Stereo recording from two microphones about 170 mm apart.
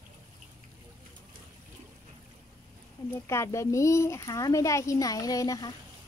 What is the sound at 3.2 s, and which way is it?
Speech, 15° left (ahead or behind).